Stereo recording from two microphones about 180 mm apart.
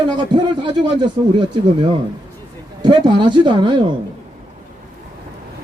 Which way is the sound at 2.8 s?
25° right (ahead or behind).